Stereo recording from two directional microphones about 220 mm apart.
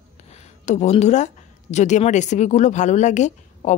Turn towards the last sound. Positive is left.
turn(degrees=30)  # may be behind; listen again after turning